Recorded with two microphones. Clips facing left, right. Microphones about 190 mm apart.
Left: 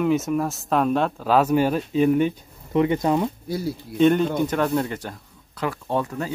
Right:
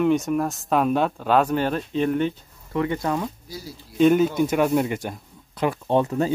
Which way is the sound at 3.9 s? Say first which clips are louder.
Right 1 dB; 5° right (ahead or behind).